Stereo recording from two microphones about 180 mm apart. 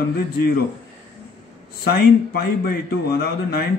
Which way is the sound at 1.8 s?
60° left (ahead or behind).